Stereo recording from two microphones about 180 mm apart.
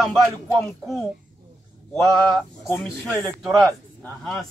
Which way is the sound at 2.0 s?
25° right (ahead or behind).